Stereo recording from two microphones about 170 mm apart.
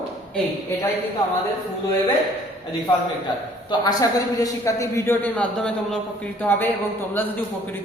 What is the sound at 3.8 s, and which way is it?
A man's voice, 20° left (ahead or behind).